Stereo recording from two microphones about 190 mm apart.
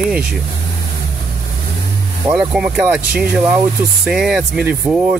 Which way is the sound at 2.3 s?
5° right (ahead or behind).